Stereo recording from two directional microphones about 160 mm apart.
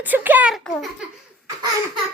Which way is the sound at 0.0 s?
10° right (ahead or behind).